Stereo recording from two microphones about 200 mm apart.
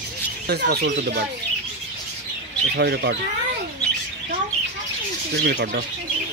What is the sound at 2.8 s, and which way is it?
Speech, 55° right (ahead or behind).